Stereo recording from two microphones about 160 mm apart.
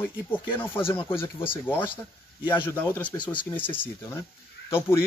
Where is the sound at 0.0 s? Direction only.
15° left (ahead or behind).